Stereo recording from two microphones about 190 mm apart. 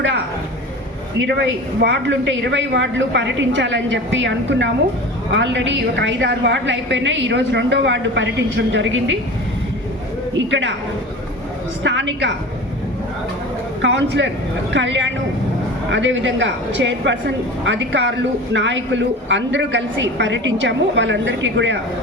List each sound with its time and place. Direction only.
1.2 s a woman's voice: 65° right (ahead or behind)
10.3 s a woman's voice: 70° right (ahead or behind)
11.8 s a woman's voice: 70° right (ahead or behind)
13.8 s a woman's voice: 70° right (ahead or behind)